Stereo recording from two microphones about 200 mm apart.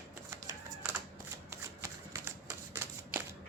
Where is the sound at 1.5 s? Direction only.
15° right (ahead or behind).